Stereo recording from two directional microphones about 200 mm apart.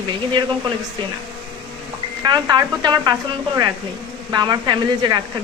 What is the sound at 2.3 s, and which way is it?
Speech, 20° right (ahead or behind).